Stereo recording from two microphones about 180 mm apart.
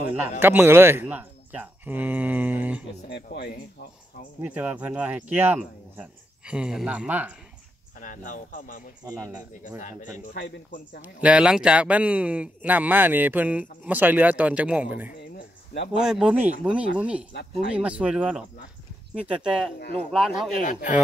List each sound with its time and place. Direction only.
0.4 s speech: 10° right (ahead or behind)
3.3 s speech: 60° left (ahead or behind)
4.4 s speech: 5° right (ahead or behind)
8.0 s speech: 45° left (ahead or behind)
9.2 s speech: 20° right (ahead or behind)
9.8 s speech: 45° left (ahead or behind)
10.3 s speech: 65° left (ahead or behind)
11.0 s speech: 5° right (ahead or behind)
15.1 s a sound: 70° left (ahead or behind)
16.0 s speech: 5° right (ahead or behind)